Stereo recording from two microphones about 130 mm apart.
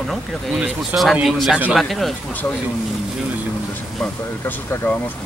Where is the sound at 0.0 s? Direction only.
Centre (ahead or behind).